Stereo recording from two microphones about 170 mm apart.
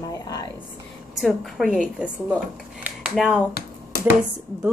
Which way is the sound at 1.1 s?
Centre (ahead or behind).